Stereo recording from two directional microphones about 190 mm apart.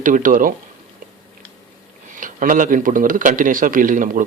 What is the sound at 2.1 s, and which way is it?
Speech, 45° right (ahead or behind).